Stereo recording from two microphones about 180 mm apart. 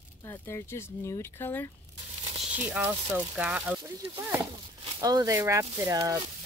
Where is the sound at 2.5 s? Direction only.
10° right (ahead or behind).